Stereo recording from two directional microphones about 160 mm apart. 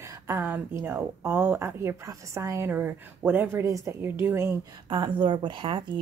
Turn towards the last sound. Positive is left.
turn(degrees=-30)  # may be behind; listen again after turning